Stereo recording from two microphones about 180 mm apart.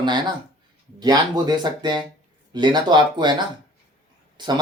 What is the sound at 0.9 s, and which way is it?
Speech, 20° right (ahead or behind).